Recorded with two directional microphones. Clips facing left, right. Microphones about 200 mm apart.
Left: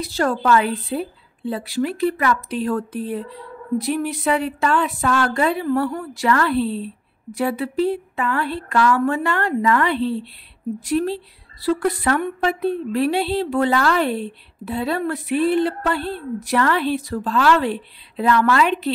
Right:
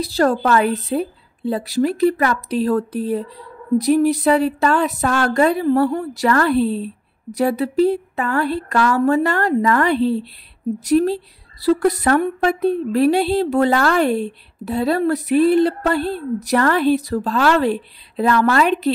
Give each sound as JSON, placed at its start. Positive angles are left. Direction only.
{"t": 0.0, "sound": "speech", "side_deg": -40}